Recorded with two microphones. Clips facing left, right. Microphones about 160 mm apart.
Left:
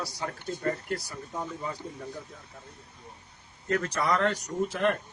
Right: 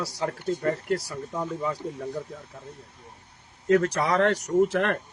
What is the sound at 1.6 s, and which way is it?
Speech, 70° right (ahead or behind).